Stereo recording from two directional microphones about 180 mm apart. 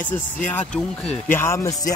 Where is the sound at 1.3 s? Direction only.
15° left (ahead or behind).